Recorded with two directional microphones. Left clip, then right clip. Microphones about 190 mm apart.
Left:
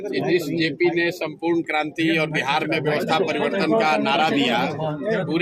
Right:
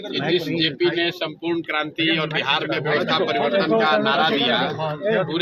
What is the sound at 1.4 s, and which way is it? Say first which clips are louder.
Speech: left 3 dB; 10° left (ahead or behind).